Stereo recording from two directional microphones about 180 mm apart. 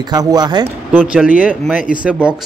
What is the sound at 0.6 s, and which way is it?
Speech, 10° right (ahead or behind).